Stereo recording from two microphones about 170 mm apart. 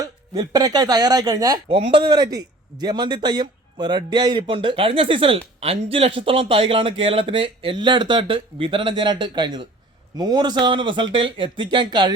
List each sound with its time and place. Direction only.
0.0 s speech: 25° right (ahead or behind)